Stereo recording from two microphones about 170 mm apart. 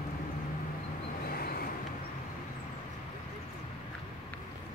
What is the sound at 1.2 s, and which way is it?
Vehicle, 60° left (ahead or behind).